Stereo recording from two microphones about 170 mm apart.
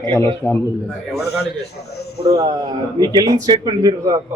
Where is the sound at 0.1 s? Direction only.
15° left (ahead or behind).